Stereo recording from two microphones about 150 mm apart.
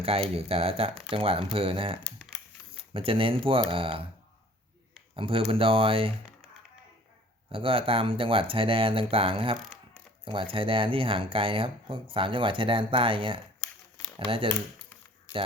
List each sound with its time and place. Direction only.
0.0 s speech: 40° right (ahead or behind)
5.1 s speech: 35° right (ahead or behind)
7.5 s speech: 35° right (ahead or behind)